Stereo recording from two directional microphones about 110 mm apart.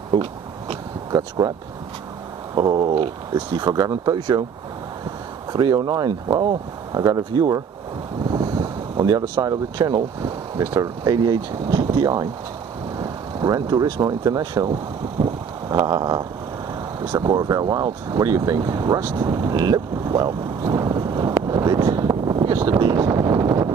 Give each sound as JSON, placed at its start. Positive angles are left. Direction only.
{"t": 0.1, "sound": "a sound", "side_deg": -60}
{"t": 2.5, "sound": "speech", "side_deg": -40}
{"t": 5.5, "sound": "speech", "side_deg": -40}
{"t": 8.3, "sound": "vehicle", "side_deg": -35}
{"t": 9.9, "sound": "speech", "side_deg": -35}
{"t": 15.7, "sound": "speech", "side_deg": -35}
{"t": 21.5, "sound": "vehicle", "side_deg": -35}
{"t": 22.6, "sound": "wind noise", "side_deg": -35}